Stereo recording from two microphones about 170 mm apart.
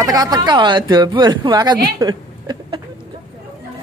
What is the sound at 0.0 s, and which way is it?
Speech, 20° right (ahead or behind).